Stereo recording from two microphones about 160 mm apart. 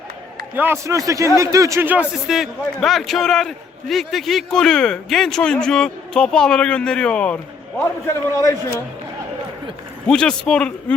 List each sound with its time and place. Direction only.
0.5 s a man's voice: 15° right (ahead or behind); by 7.3 s 5° left (ahead or behind)
7.8 s a man's voice: 20° left (ahead or behind)
10.1 s a man's voice: 5° left (ahead or behind)